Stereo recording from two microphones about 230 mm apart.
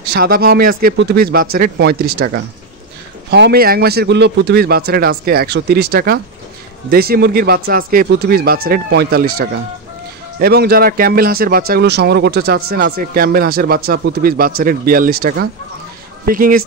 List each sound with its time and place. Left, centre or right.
0.0 s a man's voice: right